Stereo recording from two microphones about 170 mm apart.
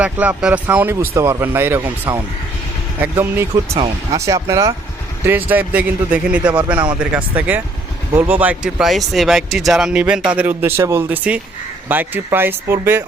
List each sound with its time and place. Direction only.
0.0 s speech: 10° right (ahead or behind)
3.5 s speech: 25° right (ahead or behind)